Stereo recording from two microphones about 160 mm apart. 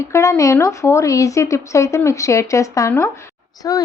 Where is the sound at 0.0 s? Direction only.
20° left (ahead or behind).